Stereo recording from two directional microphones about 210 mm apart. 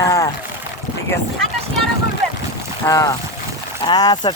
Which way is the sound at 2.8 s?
15° left (ahead or behind).